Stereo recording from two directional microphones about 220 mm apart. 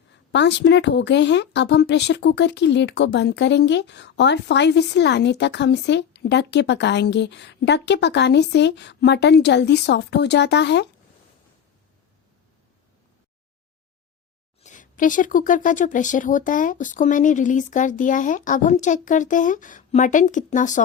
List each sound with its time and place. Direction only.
0.3 s a woman's voice: 50° left (ahead or behind)
14.6 s speech: 35° left (ahead or behind)